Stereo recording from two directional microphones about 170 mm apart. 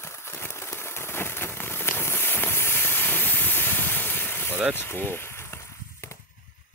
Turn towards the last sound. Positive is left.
turn(degrees=15)  # may be behind; listen again after turning